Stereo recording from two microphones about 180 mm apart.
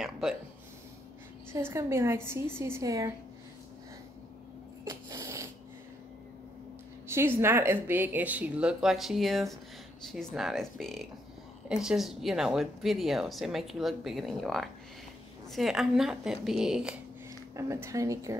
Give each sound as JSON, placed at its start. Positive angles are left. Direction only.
{"t": 0.0, "sound": "speech", "side_deg": -5}
{"t": 1.5, "sound": "a woman's voice", "side_deg": -15}
{"t": 4.8, "sound": "a sound", "side_deg": -20}
{"t": 7.1, "sound": "a woman's voice", "side_deg": -15}
{"t": 17.6, "sound": "a woman's voice", "side_deg": -15}